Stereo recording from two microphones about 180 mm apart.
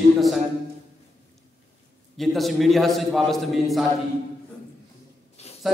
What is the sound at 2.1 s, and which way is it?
A man's voice, centre (ahead or behind).